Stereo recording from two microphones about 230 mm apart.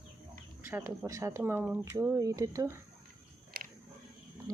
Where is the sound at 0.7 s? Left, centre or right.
Centre.